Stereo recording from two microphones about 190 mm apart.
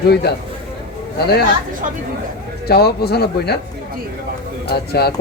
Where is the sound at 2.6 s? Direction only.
55° left (ahead or behind).